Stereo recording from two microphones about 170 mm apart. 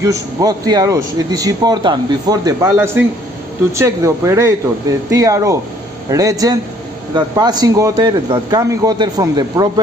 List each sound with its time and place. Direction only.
0.0 s a man's voice: 20° right (ahead or behind)